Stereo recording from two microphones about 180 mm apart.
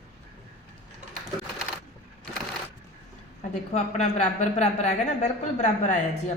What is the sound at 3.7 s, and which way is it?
Speech, 40° left (ahead or behind).